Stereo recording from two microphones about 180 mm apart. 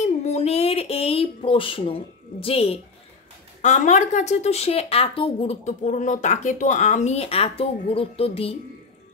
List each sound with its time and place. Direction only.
0.0 s speech: 35° left (ahead or behind)